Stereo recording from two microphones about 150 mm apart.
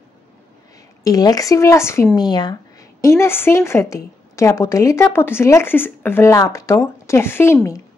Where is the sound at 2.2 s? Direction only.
30° left (ahead or behind).